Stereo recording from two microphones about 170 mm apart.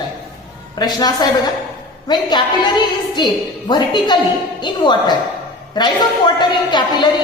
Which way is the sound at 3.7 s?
25° left (ahead or behind).